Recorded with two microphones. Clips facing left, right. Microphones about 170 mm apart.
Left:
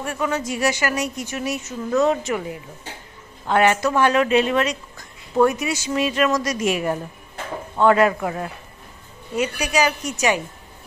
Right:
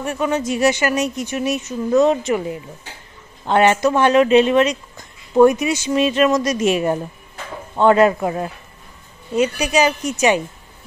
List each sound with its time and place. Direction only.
0.0 s speech: 20° right (ahead or behind)
3.4 s speech: 25° right (ahead or behind)